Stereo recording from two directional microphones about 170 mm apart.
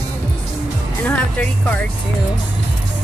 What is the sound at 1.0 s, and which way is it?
Speech, 10° left (ahead or behind).